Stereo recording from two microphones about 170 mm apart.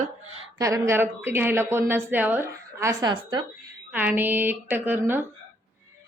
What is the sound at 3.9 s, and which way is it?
A woman's voice, 10° right (ahead or behind).